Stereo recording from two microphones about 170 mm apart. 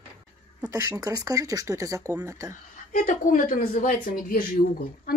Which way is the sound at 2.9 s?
50° left (ahead or behind).